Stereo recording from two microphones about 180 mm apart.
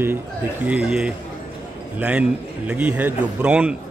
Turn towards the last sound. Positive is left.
turn(degrees=-5)  # may be behind; listen again after turning